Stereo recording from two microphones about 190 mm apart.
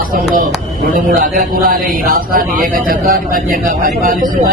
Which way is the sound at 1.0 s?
45° right (ahead or behind).